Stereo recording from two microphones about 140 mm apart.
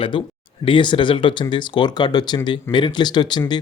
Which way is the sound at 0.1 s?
35° left (ahead or behind).